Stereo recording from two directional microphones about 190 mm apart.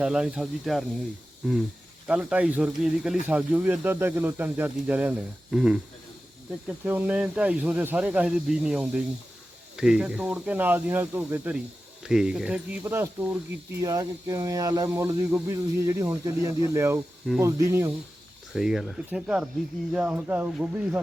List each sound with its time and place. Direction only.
0.0 s speech: 5° right (ahead or behind)
2.0 s speech: 5° right (ahead or behind)
18.5 s speech: centre (ahead or behind)